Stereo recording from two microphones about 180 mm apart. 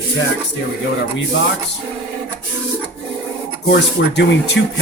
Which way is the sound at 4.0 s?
85° left.